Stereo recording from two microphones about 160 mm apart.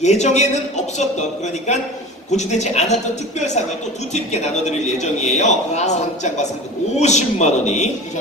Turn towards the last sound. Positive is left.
turn(degrees=45)  # may be behind; listen again after turning